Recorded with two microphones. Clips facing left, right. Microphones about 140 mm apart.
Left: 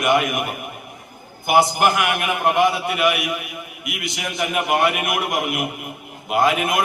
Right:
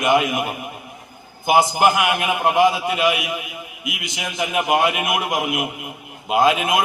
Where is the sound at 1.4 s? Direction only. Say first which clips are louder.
Right 1 dB; 15° right (ahead or behind).